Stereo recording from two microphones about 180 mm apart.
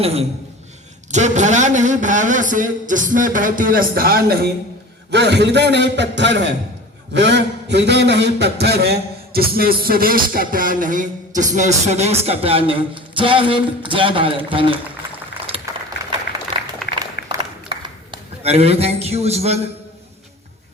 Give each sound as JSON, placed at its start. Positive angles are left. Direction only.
{"t": 0.0, "sound": "a man's voice", "side_deg": -35}
{"t": 5.1, "sound": "a man's voice", "side_deg": -70}
{"t": 15.0, "sound": "boiling", "side_deg": -15}
{"t": 15.7, "sound": "a sound", "side_deg": -20}
{"t": 16.3, "sound": "applause", "side_deg": 65}
{"t": 17.2, "sound": "a sound", "side_deg": -25}